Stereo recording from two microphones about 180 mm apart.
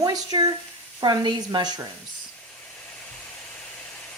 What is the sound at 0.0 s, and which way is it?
Speech, 20° right (ahead or behind).